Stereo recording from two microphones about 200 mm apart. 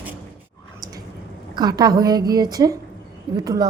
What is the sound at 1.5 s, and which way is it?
A woman's voice, 20° right (ahead or behind).